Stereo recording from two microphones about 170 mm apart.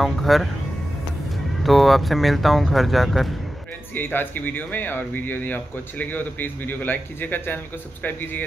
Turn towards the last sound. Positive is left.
turn(degrees=10)  # may be behind; listen again after turning